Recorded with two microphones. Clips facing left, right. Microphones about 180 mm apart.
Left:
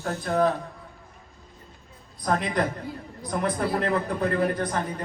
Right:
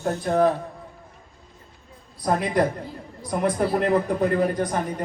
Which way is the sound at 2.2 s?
10° right (ahead or behind).